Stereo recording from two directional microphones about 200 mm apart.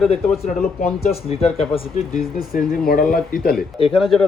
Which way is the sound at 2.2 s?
45° left (ahead or behind).